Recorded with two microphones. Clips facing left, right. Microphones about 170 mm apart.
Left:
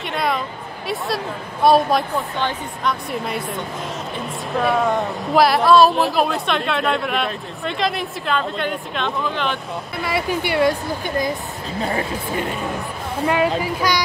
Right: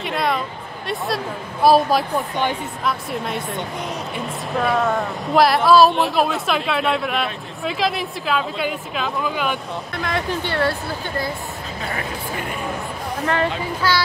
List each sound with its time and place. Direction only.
0.0 s music: centre (ahead or behind)
0.8 s speech: centre (ahead or behind)
4.6 s speech: centre (ahead or behind)
10.0 s speech: 10° left (ahead or behind)
13.2 s speech: 10° left (ahead or behind)